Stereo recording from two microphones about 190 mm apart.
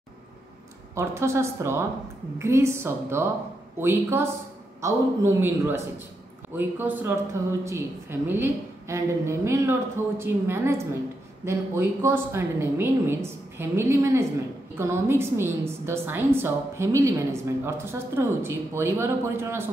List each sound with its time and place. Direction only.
0.9 s a woman's voice: 15° right (ahead or behind)